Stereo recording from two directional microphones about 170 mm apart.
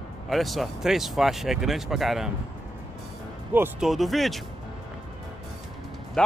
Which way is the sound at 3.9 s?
Centre (ahead or behind).